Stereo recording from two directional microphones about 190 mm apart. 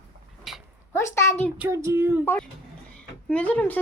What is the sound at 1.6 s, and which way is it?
Child singing, 15° right (ahead or behind).